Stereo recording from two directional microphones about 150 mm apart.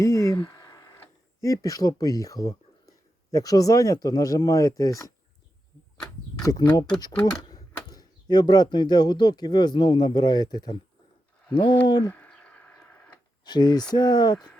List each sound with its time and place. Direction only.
0.0 s a sound: 20° left (ahead or behind)
3.3 s speech: 25° left (ahead or behind)
6.0 s a sound: 20° left (ahead or behind)
7.0 s speech: 25° left (ahead or behind)
12.1 s radio: 10° left (ahead or behind)
13.4 s speech: 30° left (ahead or behind)